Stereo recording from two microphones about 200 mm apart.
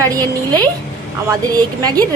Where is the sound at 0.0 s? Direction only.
15° right (ahead or behind).